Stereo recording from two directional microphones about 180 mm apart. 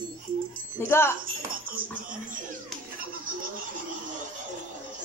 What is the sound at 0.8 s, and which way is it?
Speech, 15° left (ahead or behind).